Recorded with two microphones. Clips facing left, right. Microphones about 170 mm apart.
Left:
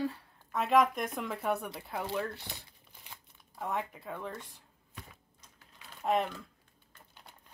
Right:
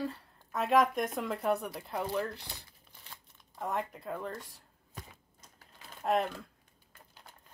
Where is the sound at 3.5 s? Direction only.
Centre (ahead or behind).